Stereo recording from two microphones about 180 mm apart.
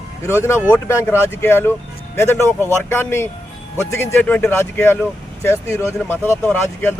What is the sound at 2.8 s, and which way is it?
A man's voice, 15° left (ahead or behind).